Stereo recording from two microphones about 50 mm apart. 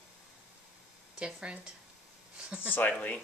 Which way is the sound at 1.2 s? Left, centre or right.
Centre.